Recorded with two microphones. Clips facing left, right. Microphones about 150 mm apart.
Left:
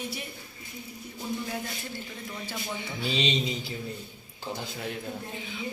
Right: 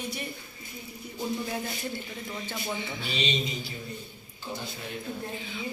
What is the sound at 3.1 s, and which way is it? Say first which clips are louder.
Speech: left 3 dB; 90° left.